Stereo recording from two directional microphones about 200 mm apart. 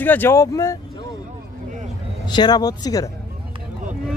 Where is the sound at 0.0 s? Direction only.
10° left (ahead or behind).